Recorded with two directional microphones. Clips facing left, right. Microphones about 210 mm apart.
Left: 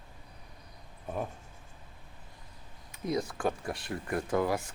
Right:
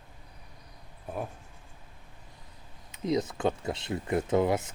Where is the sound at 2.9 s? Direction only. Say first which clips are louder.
Right 4 dB; 20° right (ahead or behind).